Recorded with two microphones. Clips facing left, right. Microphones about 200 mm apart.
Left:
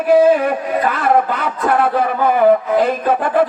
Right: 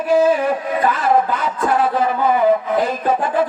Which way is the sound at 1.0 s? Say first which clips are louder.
Left 1 dB; 60° left (ahead or behind).